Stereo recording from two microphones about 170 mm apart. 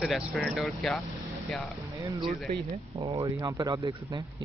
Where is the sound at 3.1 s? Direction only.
20° right (ahead or behind).